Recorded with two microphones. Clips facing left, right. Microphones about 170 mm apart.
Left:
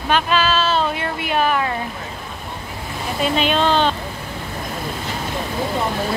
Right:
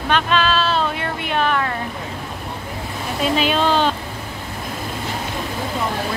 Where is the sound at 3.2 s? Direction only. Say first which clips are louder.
Even; 5° right (ahead or behind).